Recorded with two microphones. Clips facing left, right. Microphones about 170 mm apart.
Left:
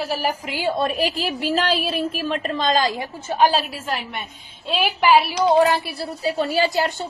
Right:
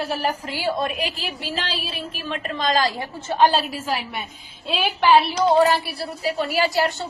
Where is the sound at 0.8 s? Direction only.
35° left (ahead or behind).